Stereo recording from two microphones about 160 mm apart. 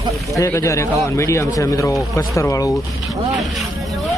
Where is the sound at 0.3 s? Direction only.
20° left (ahead or behind).